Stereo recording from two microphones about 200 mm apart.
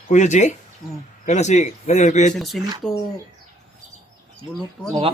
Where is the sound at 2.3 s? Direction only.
Centre (ahead or behind).